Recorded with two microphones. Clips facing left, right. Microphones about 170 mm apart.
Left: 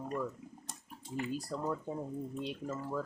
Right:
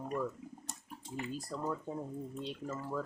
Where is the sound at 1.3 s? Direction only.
Centre (ahead or behind).